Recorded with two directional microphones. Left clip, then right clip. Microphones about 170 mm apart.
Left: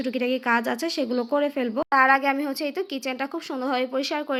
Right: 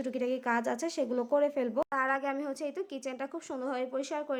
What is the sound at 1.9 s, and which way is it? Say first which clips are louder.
Speech: left 12 dB; 20° left (ahead or behind).